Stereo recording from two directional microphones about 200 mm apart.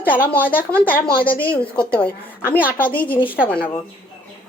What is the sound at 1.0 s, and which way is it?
Speech, 50° left (ahead or behind).